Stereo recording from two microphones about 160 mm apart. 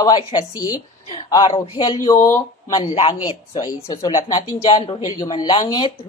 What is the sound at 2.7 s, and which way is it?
Speech, 35° left (ahead or behind).